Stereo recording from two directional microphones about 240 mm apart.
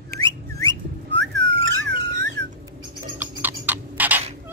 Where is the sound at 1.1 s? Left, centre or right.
Right.